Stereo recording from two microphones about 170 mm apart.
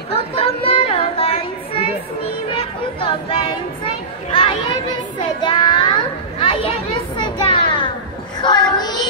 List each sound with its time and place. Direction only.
0.1 s a sound: 35° left (ahead or behind)
5.2 s children playing: 30° left (ahead or behind)
8.4 s child singing: 25° left (ahead or behind)